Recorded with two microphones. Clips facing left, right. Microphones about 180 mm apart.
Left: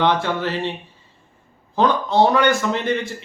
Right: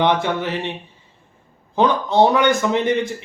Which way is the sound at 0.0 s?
15° right (ahead or behind).